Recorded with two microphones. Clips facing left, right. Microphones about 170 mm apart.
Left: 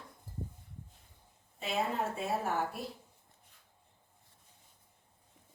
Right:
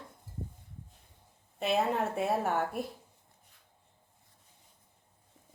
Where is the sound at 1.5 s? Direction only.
65° right (ahead or behind).